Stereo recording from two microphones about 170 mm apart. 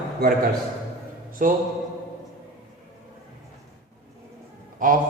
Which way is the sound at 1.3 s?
55° right (ahead or behind).